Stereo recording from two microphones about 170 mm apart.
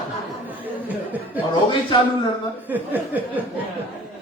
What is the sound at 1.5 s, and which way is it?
Speech, 30° left (ahead or behind).